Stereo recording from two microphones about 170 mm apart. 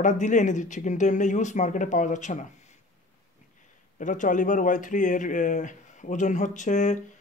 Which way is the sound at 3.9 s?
50° left (ahead or behind).